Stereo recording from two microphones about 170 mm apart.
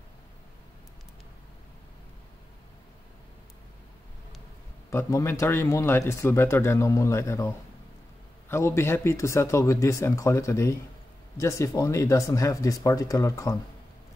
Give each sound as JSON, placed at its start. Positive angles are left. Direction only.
{"t": 4.9, "sound": "speech", "side_deg": 15}